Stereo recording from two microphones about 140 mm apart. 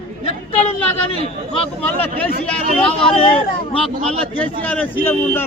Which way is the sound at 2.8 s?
40° left (ahead or behind).